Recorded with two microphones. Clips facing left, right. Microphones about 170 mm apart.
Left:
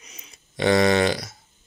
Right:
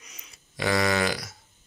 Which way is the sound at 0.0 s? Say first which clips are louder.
Left 3 dB; 25° left (ahead or behind).